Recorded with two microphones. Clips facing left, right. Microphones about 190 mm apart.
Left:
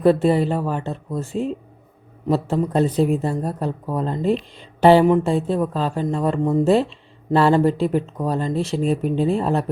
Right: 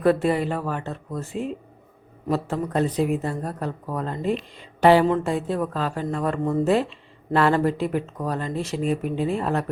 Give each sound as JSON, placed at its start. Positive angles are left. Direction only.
{"t": 0.0, "sound": "a man's voice", "side_deg": 30}
{"t": 7.3, "sound": "speech", "side_deg": 30}